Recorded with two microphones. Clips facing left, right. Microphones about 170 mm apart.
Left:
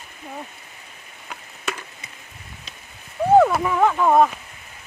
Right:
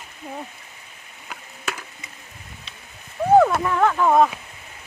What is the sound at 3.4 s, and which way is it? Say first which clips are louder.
Speech: left 1 dB; 5° left (ahead or behind).